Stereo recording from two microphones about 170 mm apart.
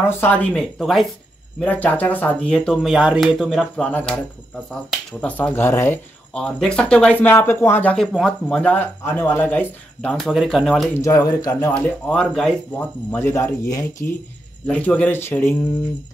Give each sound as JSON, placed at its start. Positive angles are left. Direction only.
{"t": 0.1, "sound": "speech", "side_deg": 10}
{"t": 5.2, "sound": "speech", "side_deg": 10}
{"t": 11.0, "sound": "a man's voice", "side_deg": 20}
{"t": 12.1, "sound": "speech", "side_deg": 5}
{"t": 14.7, "sound": "speech", "side_deg": 10}